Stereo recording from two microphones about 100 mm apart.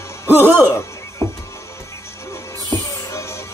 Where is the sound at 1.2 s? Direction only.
25° left (ahead or behind).